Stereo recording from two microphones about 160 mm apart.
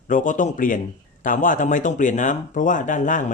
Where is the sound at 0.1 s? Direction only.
55° left (ahead or behind).